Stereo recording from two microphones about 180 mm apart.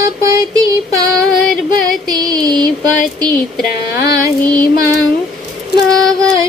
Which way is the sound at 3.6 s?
60° left (ahead or behind).